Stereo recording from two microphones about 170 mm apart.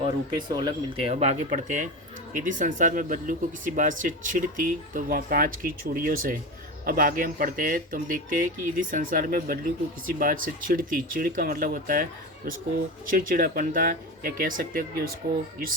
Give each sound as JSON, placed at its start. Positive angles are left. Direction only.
{"t": 0.0, "sound": "speech", "side_deg": -25}
{"t": 13.1, "sound": "speech", "side_deg": -55}